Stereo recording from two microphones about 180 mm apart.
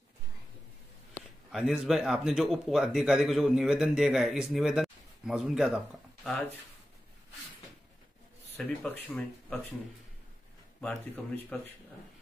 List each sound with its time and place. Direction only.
1.5 s speech: centre (ahead or behind)
8.5 s speech: 5° left (ahead or behind)
10.8 s speech: 5° left (ahead or behind)